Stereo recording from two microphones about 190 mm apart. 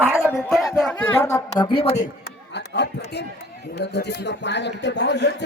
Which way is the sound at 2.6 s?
65° left (ahead or behind).